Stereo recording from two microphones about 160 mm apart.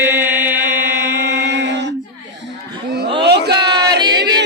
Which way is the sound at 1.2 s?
90° right.